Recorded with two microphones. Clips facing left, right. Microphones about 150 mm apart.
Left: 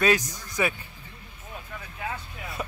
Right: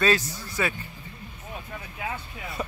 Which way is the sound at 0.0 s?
15° left (ahead or behind).